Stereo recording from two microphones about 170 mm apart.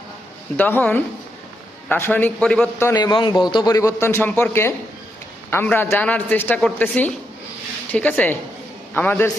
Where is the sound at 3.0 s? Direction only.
25° left (ahead or behind).